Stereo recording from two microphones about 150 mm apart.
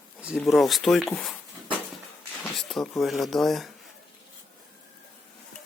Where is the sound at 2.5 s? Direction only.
Centre (ahead or behind).